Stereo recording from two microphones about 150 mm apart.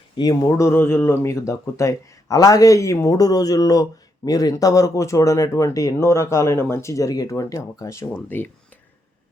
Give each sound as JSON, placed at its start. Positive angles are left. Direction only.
{"t": 0.2, "sound": "speech", "side_deg": 25}